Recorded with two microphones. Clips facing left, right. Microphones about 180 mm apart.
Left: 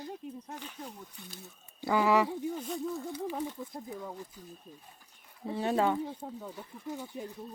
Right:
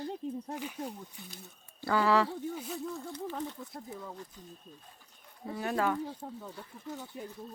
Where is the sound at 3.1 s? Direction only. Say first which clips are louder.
Left 2 dB; 10° left (ahead or behind).